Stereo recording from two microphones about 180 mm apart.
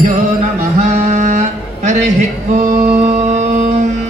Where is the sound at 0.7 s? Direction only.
40° right (ahead or behind).